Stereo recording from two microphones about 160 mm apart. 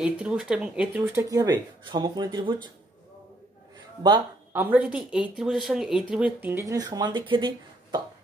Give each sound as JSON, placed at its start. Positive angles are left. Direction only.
{"t": 0.0, "sound": "speech", "side_deg": -5}
{"t": 4.5, "sound": "speech", "side_deg": -10}